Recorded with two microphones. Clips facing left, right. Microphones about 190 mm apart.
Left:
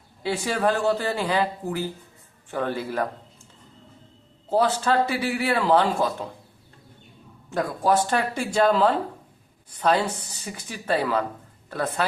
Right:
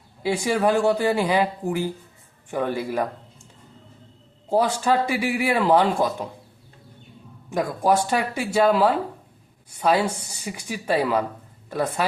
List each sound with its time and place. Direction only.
0.2 s a man's voice: 15° right (ahead or behind)
4.4 s a man's voice: 10° right (ahead or behind)
7.5 s a man's voice: 15° right (ahead or behind)